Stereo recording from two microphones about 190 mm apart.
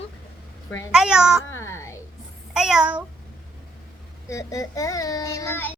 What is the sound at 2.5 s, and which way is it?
Speech, 5° right (ahead or behind).